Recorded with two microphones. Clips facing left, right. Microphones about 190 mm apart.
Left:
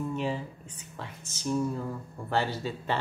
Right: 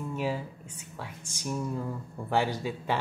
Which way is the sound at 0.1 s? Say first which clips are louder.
Right 4 dB; 5° right (ahead or behind).